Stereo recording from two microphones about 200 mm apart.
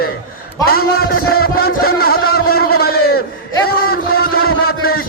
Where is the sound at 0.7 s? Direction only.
50° left (ahead or behind).